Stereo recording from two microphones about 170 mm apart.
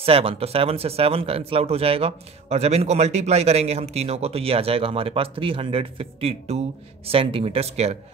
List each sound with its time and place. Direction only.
0.0 s speech: 35° right (ahead or behind)